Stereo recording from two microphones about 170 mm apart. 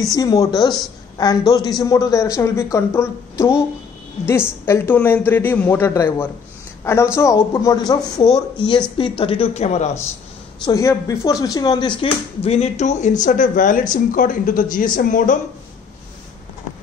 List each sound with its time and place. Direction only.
0.0 s a woman's voice: 20° left (ahead or behind); by 9.8 s 40° left (ahead or behind)
10.6 s speech: 20° left (ahead or behind)
12.0 s speech: 40° left (ahead or behind)